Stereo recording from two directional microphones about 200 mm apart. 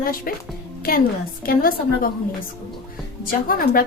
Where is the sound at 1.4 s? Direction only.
45° left (ahead or behind).